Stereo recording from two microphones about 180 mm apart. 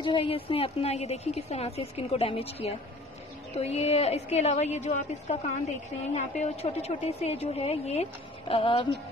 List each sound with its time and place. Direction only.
0.0 s a woman's voice: 30° left (ahead or behind)